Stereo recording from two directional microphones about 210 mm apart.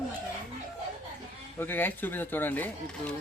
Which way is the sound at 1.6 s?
10° left (ahead or behind).